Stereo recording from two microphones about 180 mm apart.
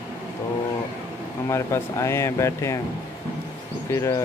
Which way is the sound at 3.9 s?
15° left (ahead or behind).